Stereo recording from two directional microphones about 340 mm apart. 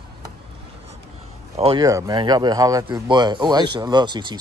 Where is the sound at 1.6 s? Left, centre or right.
Centre.